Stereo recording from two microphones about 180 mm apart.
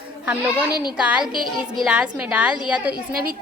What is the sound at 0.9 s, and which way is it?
A woman's voice, 5° right (ahead or behind).